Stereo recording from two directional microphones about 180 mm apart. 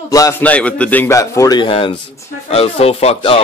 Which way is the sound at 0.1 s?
15° left (ahead or behind).